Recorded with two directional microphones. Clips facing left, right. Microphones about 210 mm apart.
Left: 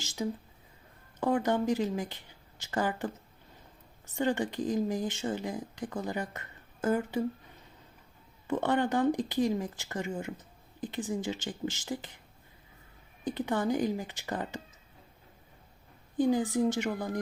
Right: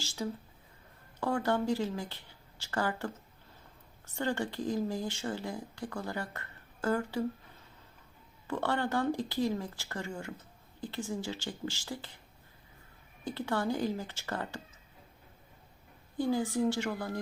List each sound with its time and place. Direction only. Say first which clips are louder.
0.0 s speech: left 3 dB; 15° left (ahead or behind)
8.4 s speech: left 4 dB; 20° left (ahead or behind)
13.2 s speech: left 3 dB; 15° left (ahead or behind)
16.1 s speech: left 4 dB; 15° left (ahead or behind)